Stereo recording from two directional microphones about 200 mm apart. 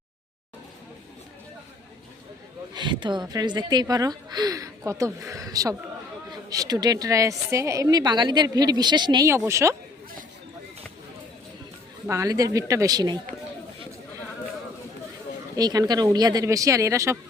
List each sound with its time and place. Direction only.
2.7 s a woman's voice: 25° right (ahead or behind)
12.0 s a woman's voice: 15° right (ahead or behind)
15.5 s a woman's voice: 20° right (ahead or behind)